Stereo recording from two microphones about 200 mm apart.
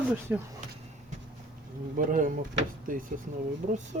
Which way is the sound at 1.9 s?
40° right (ahead or behind).